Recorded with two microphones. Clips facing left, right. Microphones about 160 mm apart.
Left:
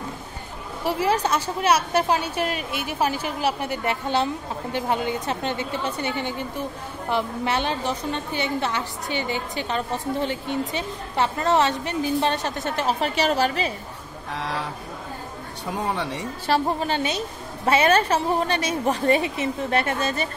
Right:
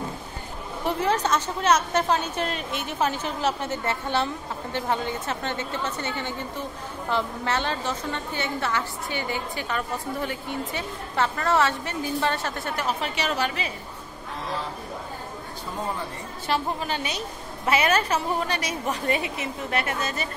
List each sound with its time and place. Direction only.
0.8 s a woman's voice: 10° left (ahead or behind); by 12.9 s 25° left (ahead or behind)
13.0 s speech: 35° left (ahead or behind)
14.3 s speech: 75° left (ahead or behind)
16.4 s a woman's voice: 35° left (ahead or behind)